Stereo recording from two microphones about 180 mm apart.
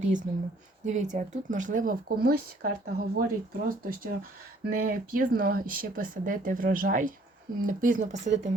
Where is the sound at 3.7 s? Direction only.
55° right (ahead or behind).